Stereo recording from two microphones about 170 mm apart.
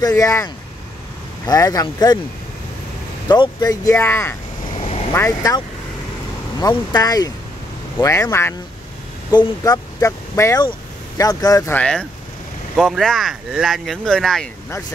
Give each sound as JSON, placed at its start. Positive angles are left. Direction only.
{"t": 0.0, "sound": "speech", "side_deg": 15}
{"t": 3.3, "sound": "speech", "side_deg": 25}
{"t": 4.7, "sound": "vehicle", "side_deg": 35}
{"t": 5.1, "sound": "speech", "side_deg": 20}
{"t": 6.9, "sound": "speech", "side_deg": 20}
{"t": 11.7, "sound": "speech", "side_deg": 5}